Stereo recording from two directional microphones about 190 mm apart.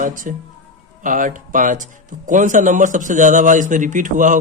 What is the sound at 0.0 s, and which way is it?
A man's voice, 45° right (ahead or behind).